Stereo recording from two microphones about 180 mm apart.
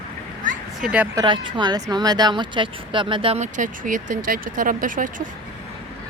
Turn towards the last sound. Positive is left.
turn(degrees=-50)  # may be behind; listen again after turning